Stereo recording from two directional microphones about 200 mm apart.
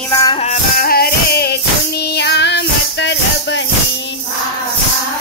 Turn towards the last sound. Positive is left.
turn(degrees=60)  # may be behind; listen again after turning